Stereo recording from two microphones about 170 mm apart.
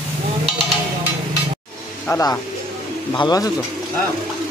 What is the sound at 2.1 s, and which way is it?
Speech, 15° left (ahead or behind).